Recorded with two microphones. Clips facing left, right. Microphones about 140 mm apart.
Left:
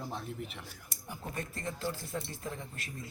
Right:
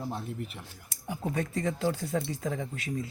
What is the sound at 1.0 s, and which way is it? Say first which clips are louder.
Speech: right 9 dB; 90° right.